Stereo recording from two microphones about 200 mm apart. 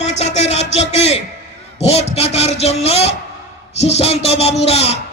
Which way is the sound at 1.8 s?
30° left (ahead or behind).